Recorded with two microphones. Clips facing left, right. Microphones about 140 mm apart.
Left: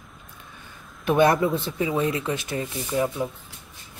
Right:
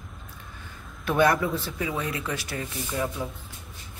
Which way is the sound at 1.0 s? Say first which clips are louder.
Left 3 dB; 20° left (ahead or behind).